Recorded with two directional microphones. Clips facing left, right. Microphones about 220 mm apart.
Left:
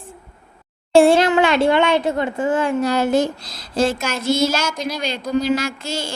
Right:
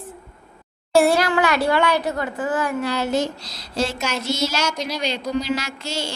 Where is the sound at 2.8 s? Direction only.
50° left (ahead or behind).